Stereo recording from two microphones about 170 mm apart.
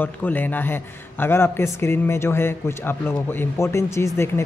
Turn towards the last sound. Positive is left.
turn(degrees=15)  # may be behind; listen again after turning